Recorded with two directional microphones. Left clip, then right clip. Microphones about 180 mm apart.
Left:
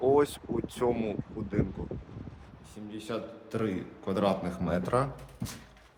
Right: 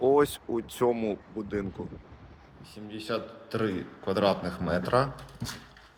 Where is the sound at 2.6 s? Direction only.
10° left (ahead or behind).